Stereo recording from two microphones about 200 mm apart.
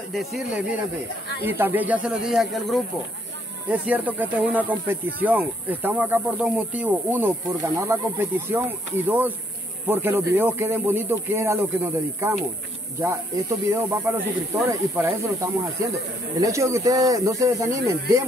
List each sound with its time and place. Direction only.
0.1 s speech: centre (ahead or behind)
13.7 s speech: 15° right (ahead or behind)